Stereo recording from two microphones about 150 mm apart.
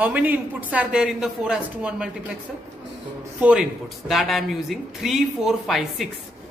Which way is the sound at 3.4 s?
5° right (ahead or behind).